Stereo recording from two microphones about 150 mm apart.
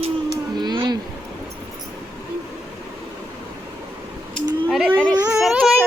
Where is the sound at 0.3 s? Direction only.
30° right (ahead or behind).